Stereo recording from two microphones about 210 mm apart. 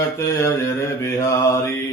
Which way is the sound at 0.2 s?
15° left (ahead or behind).